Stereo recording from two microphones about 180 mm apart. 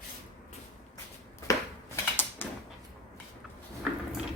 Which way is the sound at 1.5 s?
15° left (ahead or behind).